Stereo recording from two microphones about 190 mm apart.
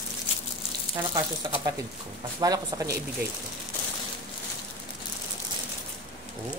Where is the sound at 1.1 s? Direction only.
20° right (ahead or behind).